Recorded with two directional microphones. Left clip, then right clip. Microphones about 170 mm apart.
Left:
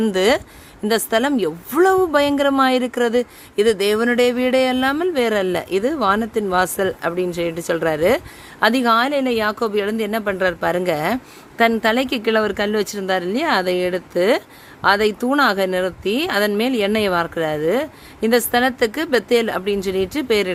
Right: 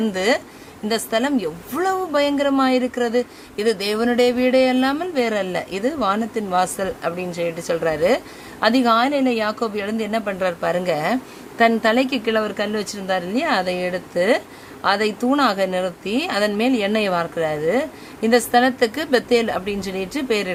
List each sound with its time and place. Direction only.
0.0 s a woman's voice: 45° left (ahead or behind)